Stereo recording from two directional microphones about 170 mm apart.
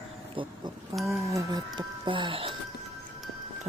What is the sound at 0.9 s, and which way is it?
Speech, 20° right (ahead or behind).